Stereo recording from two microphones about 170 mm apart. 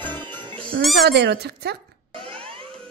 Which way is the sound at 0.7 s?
70° right (ahead or behind).